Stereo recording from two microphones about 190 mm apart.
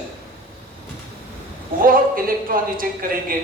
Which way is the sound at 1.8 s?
45° right (ahead or behind).